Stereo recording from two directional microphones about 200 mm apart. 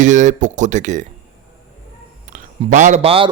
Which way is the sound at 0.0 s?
40° right (ahead or behind).